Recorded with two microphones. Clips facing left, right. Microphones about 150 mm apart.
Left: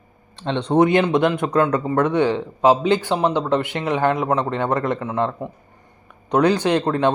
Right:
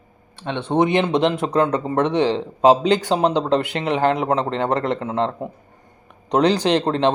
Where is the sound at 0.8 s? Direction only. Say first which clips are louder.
Left 1 dB; 25° right (ahead or behind).